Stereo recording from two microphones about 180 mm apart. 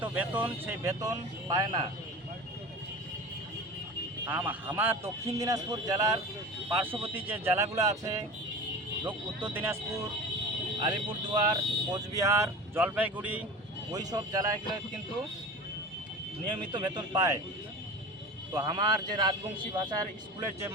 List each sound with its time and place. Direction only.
0.0 s speech: 10° right (ahead or behind)
1.5 s a man's voice: 25° right (ahead or behind)
4.3 s speech: 10° right (ahead or behind)
10.8 s speech: 25° right (ahead or behind); by 13.4 s 10° right (ahead or behind)
13.9 s a man's voice: 20° right (ahead or behind)
16.7 s a man's voice: 25° right (ahead or behind)
18.5 s a man's voice: 25° right (ahead or behind)